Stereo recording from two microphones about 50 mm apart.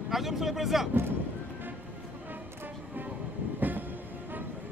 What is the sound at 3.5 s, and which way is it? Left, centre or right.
Train, right.